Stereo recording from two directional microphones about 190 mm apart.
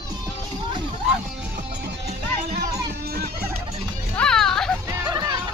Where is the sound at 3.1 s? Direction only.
55° right (ahead or behind).